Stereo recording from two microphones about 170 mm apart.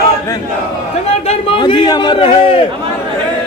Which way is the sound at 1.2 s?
35° left (ahead or behind).